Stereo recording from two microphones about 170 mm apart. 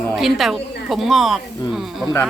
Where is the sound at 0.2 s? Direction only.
Centre (ahead or behind).